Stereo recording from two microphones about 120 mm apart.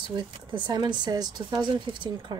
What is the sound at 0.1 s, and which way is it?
Speech, 40° right (ahead or behind).